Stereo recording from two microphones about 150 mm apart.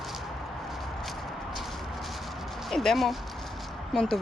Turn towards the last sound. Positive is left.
turn(degrees=5)  # may be behind; listen again after turning